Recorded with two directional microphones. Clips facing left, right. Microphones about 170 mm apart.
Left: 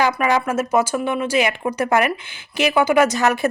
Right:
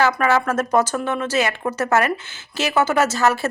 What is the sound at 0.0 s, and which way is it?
Speech, 15° left (ahead or behind).